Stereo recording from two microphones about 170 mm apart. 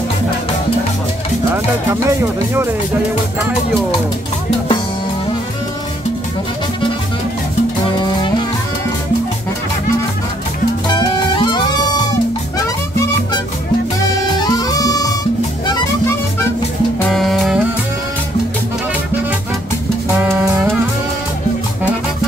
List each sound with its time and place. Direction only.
1.9 s speech: 15° right (ahead or behind)
10.9 s music: 25° left (ahead or behind)
14.6 s music: 20° left (ahead or behind)
17.1 s music: centre (ahead or behind)
20.2 s music: 10° right (ahead or behind)